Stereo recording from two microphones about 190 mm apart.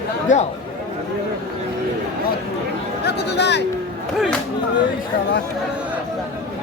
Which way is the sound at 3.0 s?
60° left (ahead or behind).